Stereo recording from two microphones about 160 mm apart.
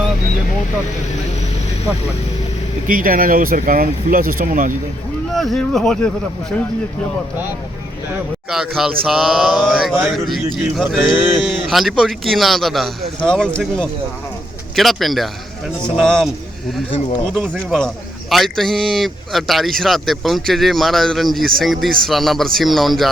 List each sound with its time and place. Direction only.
2.8 s speech: 60° right (ahead or behind)
5.3 s speech: centre (ahead or behind)
8.4 s speech: 5° right (ahead or behind)